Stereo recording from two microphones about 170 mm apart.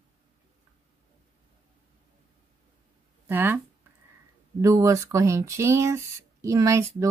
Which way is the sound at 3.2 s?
10° right (ahead or behind).